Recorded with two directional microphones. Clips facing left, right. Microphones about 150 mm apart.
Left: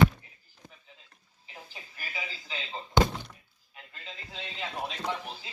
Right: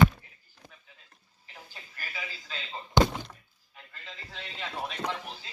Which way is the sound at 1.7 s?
15° left (ahead or behind).